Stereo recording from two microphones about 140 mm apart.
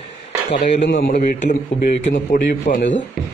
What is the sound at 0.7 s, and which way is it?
A man's voice, 70° left (ahead or behind).